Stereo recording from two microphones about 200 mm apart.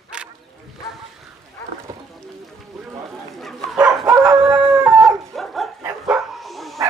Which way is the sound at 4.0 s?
20° right (ahead or behind).